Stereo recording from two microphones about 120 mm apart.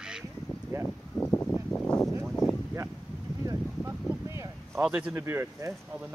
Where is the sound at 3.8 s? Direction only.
25° right (ahead or behind).